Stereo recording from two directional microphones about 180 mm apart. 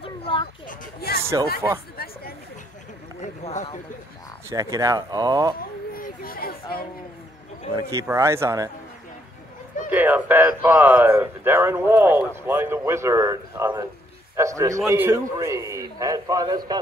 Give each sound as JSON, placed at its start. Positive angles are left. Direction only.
{"t": 0.0, "sound": "children playing", "side_deg": 30}
{"t": 0.7, "sound": "a sound", "side_deg": 60}
{"t": 2.0, "sound": "chatter", "side_deg": 55}
{"t": 3.2, "sound": "a sound", "side_deg": 45}
{"t": 4.5, "sound": "a man's voice", "side_deg": -20}
{"t": 5.6, "sound": "children playing", "side_deg": 55}
{"t": 7.7, "sound": "speech", "side_deg": -20}
{"t": 9.8, "sound": "a man's voice", "side_deg": -10}